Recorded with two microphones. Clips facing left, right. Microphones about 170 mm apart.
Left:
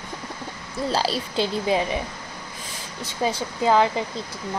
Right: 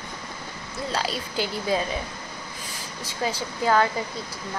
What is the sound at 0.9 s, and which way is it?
Speech, 30° left (ahead or behind).